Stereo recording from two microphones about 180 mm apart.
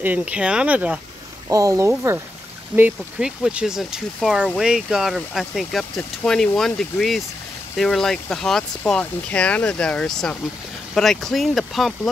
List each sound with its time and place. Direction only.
0.0 s speech: 10° right (ahead or behind)
1.5 s speech: 20° right (ahead or behind); by 12.1 s centre (ahead or behind)